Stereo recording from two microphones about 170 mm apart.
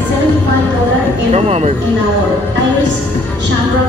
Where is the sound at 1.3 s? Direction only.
35° right (ahead or behind).